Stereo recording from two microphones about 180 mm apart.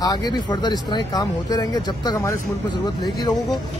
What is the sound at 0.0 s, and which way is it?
Speech, 20° left (ahead or behind).